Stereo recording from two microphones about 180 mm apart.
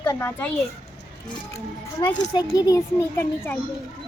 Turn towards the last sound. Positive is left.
turn(degrees=15)  # may be behind; listen again after turning